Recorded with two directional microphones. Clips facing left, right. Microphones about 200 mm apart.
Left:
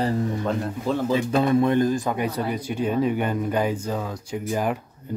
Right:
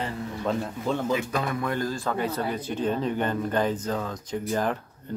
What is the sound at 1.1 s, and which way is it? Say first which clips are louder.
Speech: left 6 dB; 30° left (ahead or behind).